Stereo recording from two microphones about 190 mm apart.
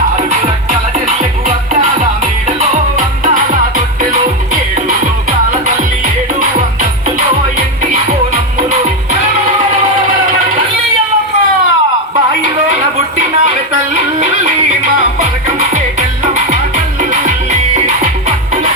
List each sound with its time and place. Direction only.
12.7 s music: 35° right (ahead or behind)
15.7 s music: 40° right (ahead or behind)